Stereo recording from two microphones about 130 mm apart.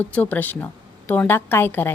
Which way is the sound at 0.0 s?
10° left (ahead or behind).